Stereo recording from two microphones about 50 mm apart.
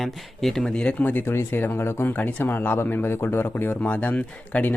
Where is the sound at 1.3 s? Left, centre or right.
Left.